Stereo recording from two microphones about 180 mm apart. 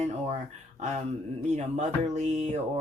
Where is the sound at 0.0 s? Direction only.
35° right (ahead or behind).